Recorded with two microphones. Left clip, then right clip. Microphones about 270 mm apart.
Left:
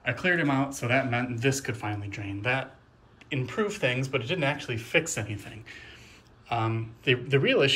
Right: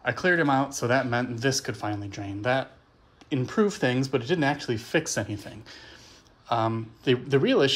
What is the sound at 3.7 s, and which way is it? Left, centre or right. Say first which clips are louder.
Speech: right 2 dB; centre.